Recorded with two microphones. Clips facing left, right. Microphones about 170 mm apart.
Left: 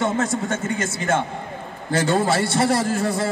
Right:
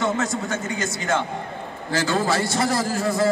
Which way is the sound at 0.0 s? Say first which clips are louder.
Left 2 dB; 30° left (ahead or behind).